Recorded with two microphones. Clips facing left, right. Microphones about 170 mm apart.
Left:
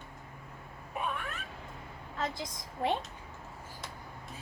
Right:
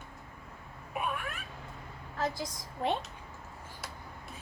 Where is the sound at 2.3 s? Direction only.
20° left (ahead or behind).